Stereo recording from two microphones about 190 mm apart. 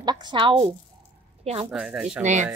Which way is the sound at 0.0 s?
20° right (ahead or behind).